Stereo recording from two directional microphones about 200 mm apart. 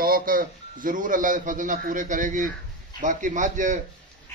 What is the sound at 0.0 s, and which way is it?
A man's voice, 45° right (ahead or behind).